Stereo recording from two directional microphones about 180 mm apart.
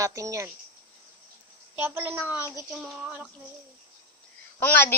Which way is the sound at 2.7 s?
Centre (ahead or behind).